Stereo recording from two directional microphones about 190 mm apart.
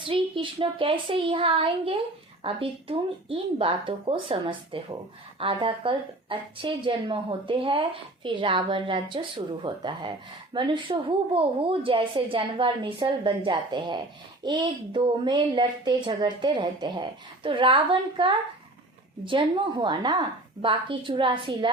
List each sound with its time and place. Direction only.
0.0 s a woman's voice: 25° right (ahead or behind)